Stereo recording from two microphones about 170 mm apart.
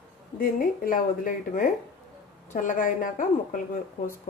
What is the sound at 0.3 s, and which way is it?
A woman's voice, 55° left (ahead or behind).